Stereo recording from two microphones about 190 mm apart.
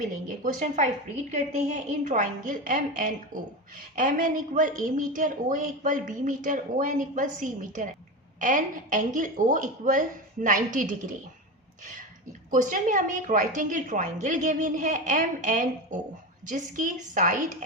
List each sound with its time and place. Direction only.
0.3 s a woman's voice: 40° right (ahead or behind)
12.5 s a woman's voice: 45° right (ahead or behind)